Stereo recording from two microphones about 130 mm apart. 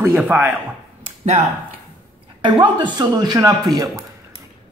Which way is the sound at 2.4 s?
35° right (ahead or behind).